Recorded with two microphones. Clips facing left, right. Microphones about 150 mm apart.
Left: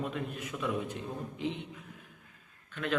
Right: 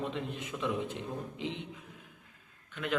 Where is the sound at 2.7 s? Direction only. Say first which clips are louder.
Left 1 dB; 15° right (ahead or behind).